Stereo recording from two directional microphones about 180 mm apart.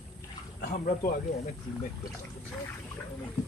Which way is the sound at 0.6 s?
50° left (ahead or behind).